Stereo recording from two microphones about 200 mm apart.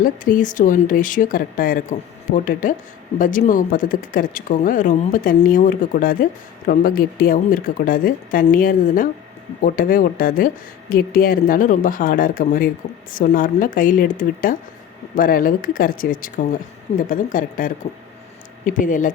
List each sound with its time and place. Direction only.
0.0 s speech: 40° left (ahead or behind)